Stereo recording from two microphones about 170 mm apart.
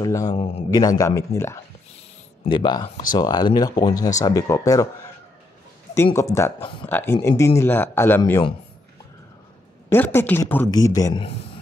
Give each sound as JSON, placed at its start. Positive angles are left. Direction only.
{"t": 0.0, "sound": "speech", "side_deg": 20}
{"t": 2.4, "sound": "speech", "side_deg": 25}
{"t": 6.1, "sound": "speech", "side_deg": 15}
{"t": 8.2, "sound": "speech", "side_deg": 25}
{"t": 9.8, "sound": "speech", "side_deg": 10}